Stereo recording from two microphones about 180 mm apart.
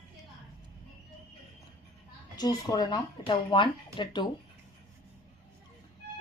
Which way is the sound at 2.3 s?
20° left (ahead or behind).